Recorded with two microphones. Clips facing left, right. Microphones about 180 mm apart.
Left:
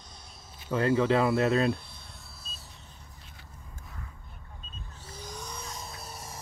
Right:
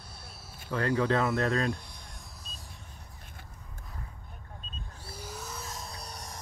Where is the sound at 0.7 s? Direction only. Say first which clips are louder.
Left 3 dB; 10° left (ahead or behind).